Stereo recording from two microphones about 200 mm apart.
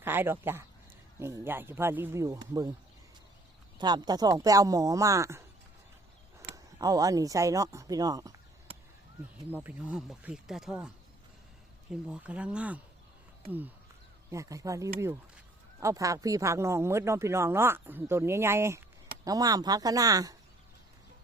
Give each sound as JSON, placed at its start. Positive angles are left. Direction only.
{"t": 0.0, "sound": "speech", "side_deg": -10}
{"t": 3.8, "sound": "speech", "side_deg": -20}
{"t": 6.7, "sound": "speech", "side_deg": -20}
{"t": 9.5, "sound": "speech", "side_deg": -10}
{"t": 14.3, "sound": "speech", "side_deg": -15}